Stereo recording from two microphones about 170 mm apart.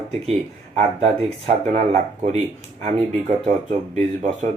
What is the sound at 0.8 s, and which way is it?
Speech, 35° right (ahead or behind).